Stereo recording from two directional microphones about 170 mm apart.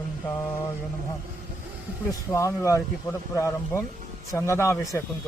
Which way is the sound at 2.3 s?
15° left (ahead or behind).